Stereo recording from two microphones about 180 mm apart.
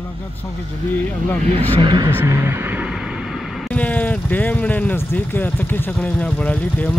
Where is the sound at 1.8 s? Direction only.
25° right (ahead or behind).